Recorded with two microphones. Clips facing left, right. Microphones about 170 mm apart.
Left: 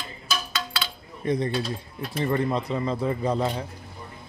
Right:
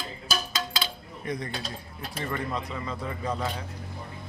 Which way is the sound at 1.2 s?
30° left (ahead or behind).